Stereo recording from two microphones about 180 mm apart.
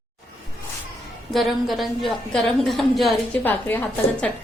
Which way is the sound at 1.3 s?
Centre (ahead or behind).